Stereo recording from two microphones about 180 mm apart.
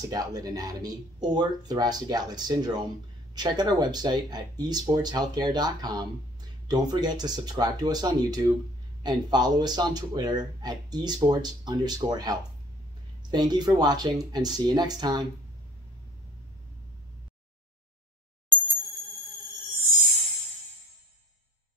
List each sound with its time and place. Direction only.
0.1 s speech: 20° right (ahead or behind)